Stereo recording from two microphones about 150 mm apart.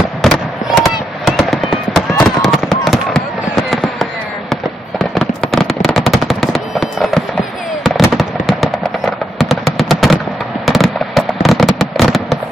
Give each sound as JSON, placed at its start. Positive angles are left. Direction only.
{"t": 0.2, "sound": "fireworks", "side_deg": 0}